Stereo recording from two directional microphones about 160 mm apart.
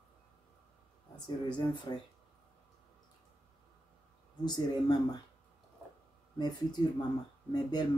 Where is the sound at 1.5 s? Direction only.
30° left (ahead or behind).